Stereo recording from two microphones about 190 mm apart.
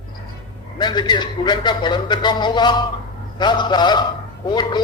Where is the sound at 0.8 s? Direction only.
25° left (ahead or behind).